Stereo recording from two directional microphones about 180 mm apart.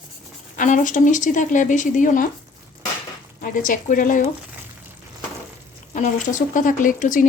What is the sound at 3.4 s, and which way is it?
Speech, 50° left (ahead or behind).